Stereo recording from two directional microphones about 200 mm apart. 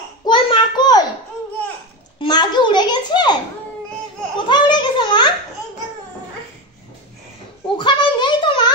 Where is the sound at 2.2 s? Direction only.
20° left (ahead or behind).